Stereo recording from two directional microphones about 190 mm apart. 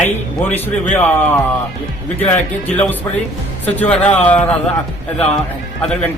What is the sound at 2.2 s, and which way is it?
Speech, 10° left (ahead or behind).